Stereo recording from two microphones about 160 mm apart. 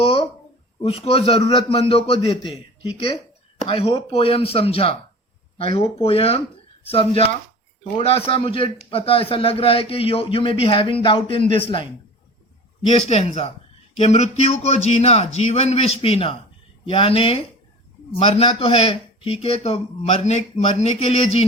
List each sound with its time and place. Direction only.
0.0 s a sound: 35° left (ahead or behind)
0.8 s a man's voice: 35° left (ahead or behind)
3.6 s a man's voice: 35° left (ahead or behind)
12.9 s a man's voice: 40° left (ahead or behind)